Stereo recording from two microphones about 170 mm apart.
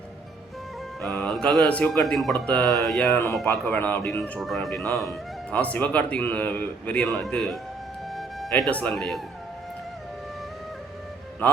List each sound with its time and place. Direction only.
1.0 s a man's voice: 5° left (ahead or behind)
4.2 s speech: centre (ahead or behind)
8.1 s music: centre (ahead or behind)
8.7 s a man's voice: 5° left (ahead or behind)